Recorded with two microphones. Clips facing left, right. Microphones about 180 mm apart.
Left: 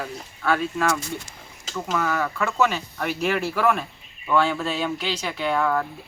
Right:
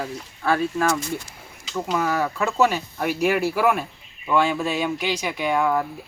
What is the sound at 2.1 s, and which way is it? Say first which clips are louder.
Speech: right 2 dB; 30° right (ahead or behind).